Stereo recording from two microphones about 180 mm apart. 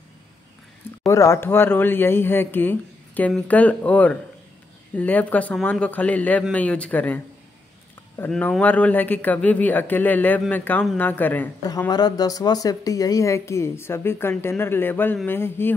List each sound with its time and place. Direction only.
1.0 s speech: 15° left (ahead or behind)
8.3 s speech: 5° left (ahead or behind)
11.9 s speech: 20° left (ahead or behind)